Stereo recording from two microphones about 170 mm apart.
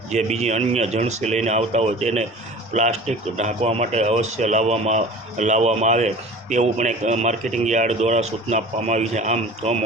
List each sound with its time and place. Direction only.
0.1 s speech: 40° right (ahead or behind)